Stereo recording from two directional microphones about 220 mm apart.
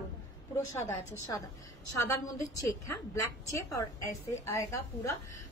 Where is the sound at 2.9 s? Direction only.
15° left (ahead or behind).